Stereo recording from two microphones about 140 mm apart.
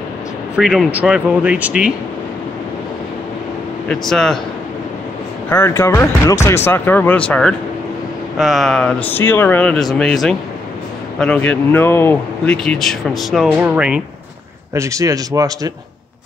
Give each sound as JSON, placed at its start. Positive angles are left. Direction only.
{"t": 0.6, "sound": "speech", "side_deg": 0}
{"t": 3.9, "sound": "speech", "side_deg": 5}
{"t": 5.5, "sound": "speech", "side_deg": 20}
{"t": 14.7, "sound": "a man's voice", "side_deg": -20}